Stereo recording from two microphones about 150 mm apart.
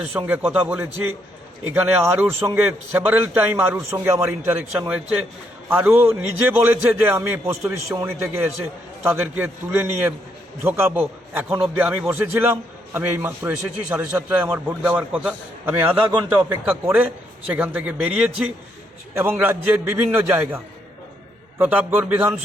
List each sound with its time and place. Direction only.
0.1 s a man's voice: 10° right (ahead or behind)
21.6 s a man's voice: 10° right (ahead or behind)